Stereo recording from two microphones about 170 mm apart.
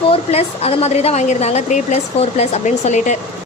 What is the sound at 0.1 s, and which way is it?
A woman's voice, 35° left (ahead or behind).